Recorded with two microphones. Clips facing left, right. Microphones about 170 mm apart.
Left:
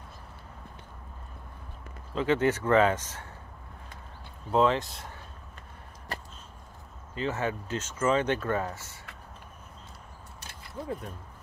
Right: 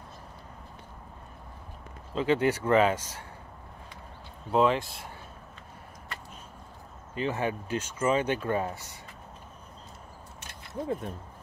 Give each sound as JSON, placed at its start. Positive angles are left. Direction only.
{"t": 2.1, "sound": "speech", "side_deg": -15}
{"t": 4.5, "sound": "speech", "side_deg": -15}
{"t": 7.2, "sound": "speech", "side_deg": -15}
{"t": 10.7, "sound": "speech", "side_deg": -25}